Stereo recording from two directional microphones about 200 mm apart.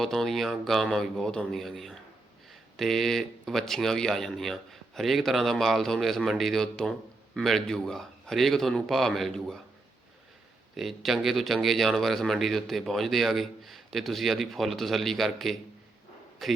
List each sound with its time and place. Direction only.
0.0 s speech: centre (ahead or behind)
10.8 s speech: centre (ahead or behind)